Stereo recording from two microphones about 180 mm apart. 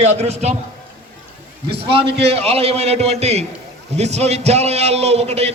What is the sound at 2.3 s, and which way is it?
A man's voice, 35° right (ahead or behind).